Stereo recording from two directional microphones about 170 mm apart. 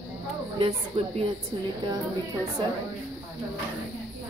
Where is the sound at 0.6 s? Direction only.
30° right (ahead or behind).